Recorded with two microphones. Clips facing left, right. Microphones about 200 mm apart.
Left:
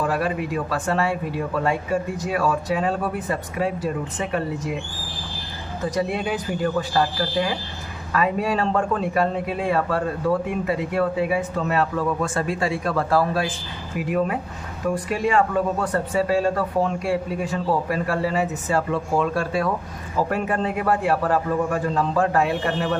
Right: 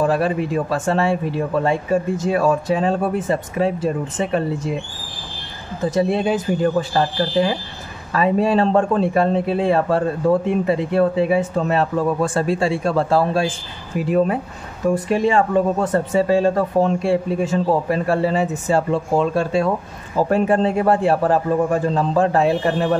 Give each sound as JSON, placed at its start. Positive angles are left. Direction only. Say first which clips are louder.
{"t": 0.0, "sound": "a man's voice", "louder": "right 5 dB", "side_deg": -30}
{"t": 5.9, "sound": "a man's voice", "louder": "right 6 dB", "side_deg": -25}